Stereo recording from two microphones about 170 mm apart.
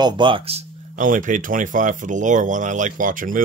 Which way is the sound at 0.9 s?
50° right (ahead or behind).